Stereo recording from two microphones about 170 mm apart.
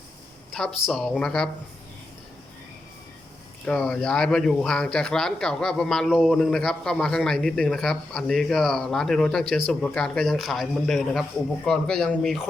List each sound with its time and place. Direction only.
0.9 s speech: centre (ahead or behind)
3.7 s speech: 5° left (ahead or behind)